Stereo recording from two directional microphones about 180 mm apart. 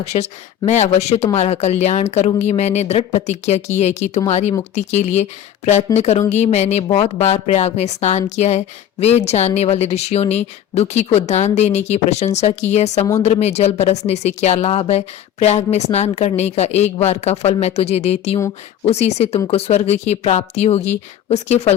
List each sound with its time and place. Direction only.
0.0 s speech: 35° left (ahead or behind)
13.0 s speech: 15° left (ahead or behind)
13.2 s speech: 35° left (ahead or behind)